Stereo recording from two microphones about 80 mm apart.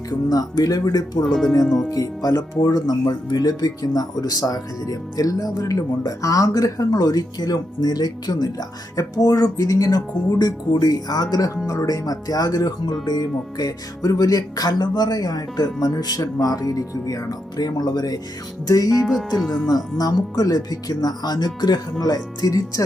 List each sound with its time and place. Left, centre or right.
0.1 s speech: left
1.2 s speech: centre
1.9 s speech: left